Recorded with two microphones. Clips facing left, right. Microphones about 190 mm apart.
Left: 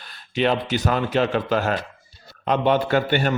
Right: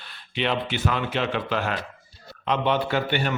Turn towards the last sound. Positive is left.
turn(degrees=45)  # may be behind; listen again after turning